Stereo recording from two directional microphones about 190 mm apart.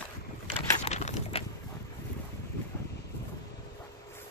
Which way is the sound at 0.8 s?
35° left (ahead or behind).